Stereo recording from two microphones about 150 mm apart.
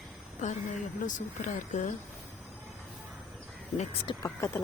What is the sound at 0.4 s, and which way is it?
Speech, 50° left (ahead or behind).